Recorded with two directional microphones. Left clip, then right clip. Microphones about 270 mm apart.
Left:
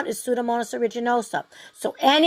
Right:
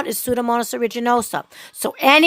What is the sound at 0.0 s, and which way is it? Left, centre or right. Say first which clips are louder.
A woman's voice: right 3 dB; right.